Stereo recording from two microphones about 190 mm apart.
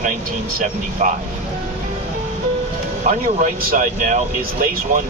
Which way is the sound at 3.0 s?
45° right (ahead or behind).